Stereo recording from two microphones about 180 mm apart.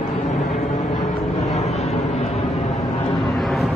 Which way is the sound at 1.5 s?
35° left (ahead or behind).